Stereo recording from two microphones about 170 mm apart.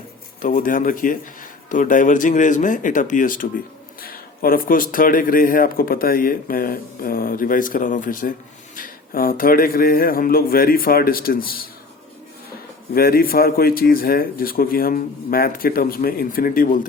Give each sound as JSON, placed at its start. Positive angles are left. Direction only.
{"t": 0.4, "sound": "speech", "side_deg": 50}
{"t": 12.9, "sound": "speech", "side_deg": 60}